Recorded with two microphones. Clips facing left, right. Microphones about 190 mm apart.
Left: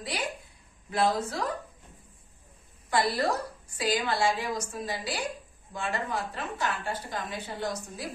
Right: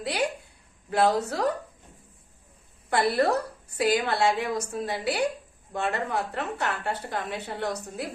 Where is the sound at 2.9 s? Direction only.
60° right (ahead or behind).